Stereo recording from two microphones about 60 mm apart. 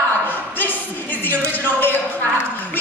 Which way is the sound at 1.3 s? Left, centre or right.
Left.